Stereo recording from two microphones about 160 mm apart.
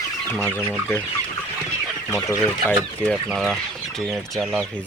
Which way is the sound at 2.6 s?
Centre (ahead or behind).